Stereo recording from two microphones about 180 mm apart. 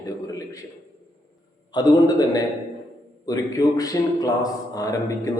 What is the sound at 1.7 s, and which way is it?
A man's voice, 20° left (ahead or behind).